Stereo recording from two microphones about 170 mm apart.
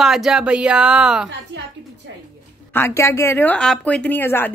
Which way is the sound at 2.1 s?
90° right.